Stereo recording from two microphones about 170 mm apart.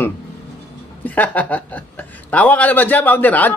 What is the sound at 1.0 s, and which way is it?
A man's voice, 10° left (ahead or behind).